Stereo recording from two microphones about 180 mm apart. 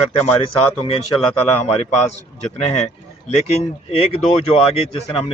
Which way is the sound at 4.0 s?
30° left (ahead or behind).